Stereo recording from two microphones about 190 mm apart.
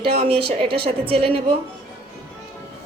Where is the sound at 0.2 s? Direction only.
30° right (ahead or behind).